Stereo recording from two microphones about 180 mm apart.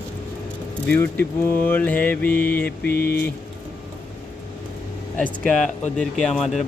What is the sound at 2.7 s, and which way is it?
Mantra, 60° left (ahead or behind).